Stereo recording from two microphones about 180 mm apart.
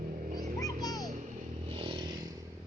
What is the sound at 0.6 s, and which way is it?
Music, 20° left (ahead or behind).